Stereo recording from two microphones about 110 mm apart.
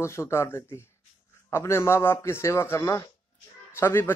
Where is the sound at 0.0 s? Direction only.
25° left (ahead or behind).